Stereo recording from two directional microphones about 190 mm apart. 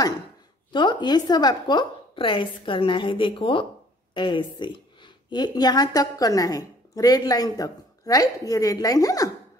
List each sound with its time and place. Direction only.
0.7 s a woman's voice: 25° left (ahead or behind)